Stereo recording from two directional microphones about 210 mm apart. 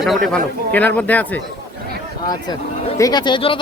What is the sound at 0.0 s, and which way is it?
Speech, centre (ahead or behind).